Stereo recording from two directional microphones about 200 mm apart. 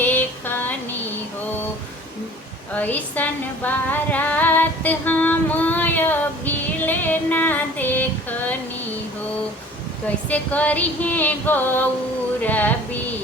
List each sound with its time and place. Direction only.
0.0 s a sound: 10° left (ahead or behind)
2.7 s music: 10° left (ahead or behind)
10.2 s female singing: 5° left (ahead or behind)